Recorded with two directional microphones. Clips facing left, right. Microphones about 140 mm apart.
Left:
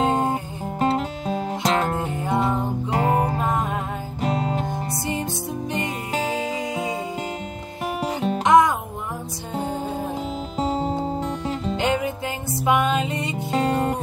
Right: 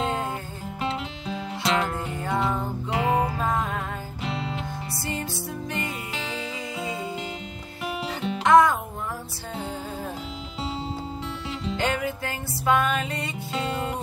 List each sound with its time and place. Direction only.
0.0 s music: 45° left (ahead or behind)
2.1 s music: 20° left (ahead or behind)
2.9 s music: 45° left (ahead or behind)
5.0 s music: 20° left (ahead or behind)
6.1 s music: 45° left (ahead or behind)
8.5 s music: 20° left (ahead or behind)
10.6 s music: 45° left (ahead or behind)
11.7 s music: 20° left (ahead or behind)
13.5 s music: 45° left (ahead or behind)